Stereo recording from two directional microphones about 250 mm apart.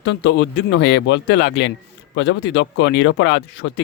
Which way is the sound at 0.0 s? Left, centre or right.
Left.